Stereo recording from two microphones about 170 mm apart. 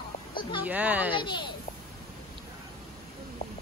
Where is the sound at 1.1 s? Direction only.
30° left (ahead or behind).